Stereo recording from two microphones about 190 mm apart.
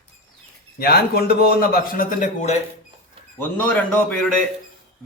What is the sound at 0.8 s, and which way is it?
A man's voice, 55° left (ahead or behind).